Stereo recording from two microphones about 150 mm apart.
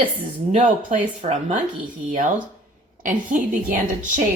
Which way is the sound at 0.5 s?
50° right (ahead or behind).